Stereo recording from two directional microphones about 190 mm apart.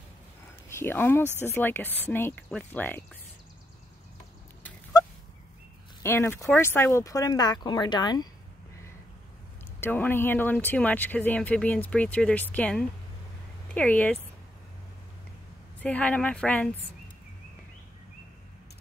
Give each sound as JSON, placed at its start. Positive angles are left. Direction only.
{"t": 0.7, "sound": "speech", "side_deg": 10}
{"t": 4.9, "sound": "fowl", "side_deg": 20}
{"t": 6.0, "sound": "speech", "side_deg": 10}
{"t": 9.8, "sound": "speech", "side_deg": 10}
{"t": 15.8, "sound": "speech", "side_deg": 5}